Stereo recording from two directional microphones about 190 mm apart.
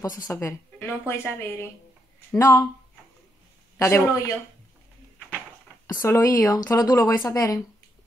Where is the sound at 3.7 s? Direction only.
15° left (ahead or behind).